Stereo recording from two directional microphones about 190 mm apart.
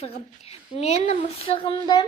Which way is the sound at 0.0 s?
30° left (ahead or behind).